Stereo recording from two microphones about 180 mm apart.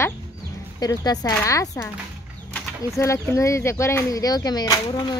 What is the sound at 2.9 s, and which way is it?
A child's voice, 15° left (ahead or behind).